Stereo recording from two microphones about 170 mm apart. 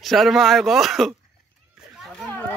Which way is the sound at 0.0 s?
Centre (ahead or behind).